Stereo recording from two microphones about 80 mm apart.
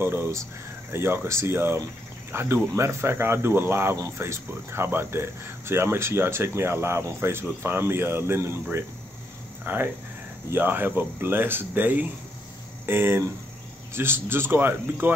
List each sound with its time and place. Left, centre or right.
0.0 s speech: right
9.7 s speech: right